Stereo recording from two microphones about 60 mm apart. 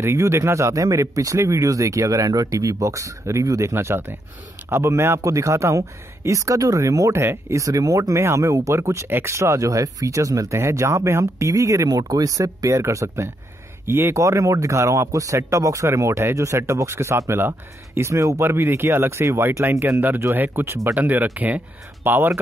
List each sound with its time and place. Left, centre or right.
0.0 s speech: right
3.7 s speech: right
7.2 s speech: right
7.5 s speech: right
8.2 s speech: right
10.6 s speech: right
12.7 s speech: right
14.2 s speech: right
19.8 s speech: right
20.9 s speech: right